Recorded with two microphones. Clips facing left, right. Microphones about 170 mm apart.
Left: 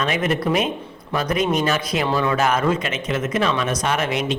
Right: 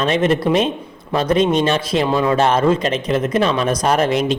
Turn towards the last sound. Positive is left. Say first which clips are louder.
# right 6 dB
turn(degrees=-35)  # may be behind; listen again after turning